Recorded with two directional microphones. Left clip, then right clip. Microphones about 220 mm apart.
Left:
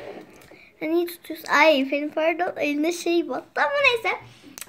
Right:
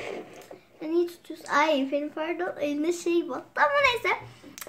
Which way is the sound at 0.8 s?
25° left (ahead or behind).